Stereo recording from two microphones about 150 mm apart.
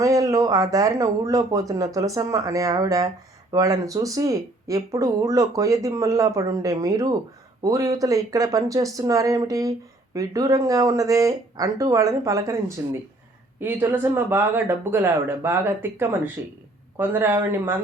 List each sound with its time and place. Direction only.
0.0 s speech: 20° right (ahead or behind)